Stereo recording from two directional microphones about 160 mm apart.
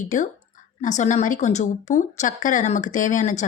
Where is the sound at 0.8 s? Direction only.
45° left (ahead or behind).